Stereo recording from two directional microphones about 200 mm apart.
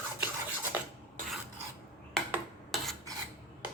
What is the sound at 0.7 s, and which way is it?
Dishes, 10° right (ahead or behind).